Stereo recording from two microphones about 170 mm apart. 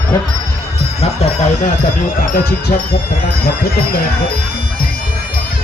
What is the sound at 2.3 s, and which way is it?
Speech, 65° left (ahead or behind).